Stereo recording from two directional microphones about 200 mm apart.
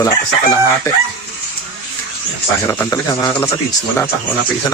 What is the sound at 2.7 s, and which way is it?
Speech, 15° left (ahead or behind).